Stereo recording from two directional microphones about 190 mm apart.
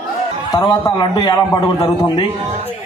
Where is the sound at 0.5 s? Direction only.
20° left (ahead or behind).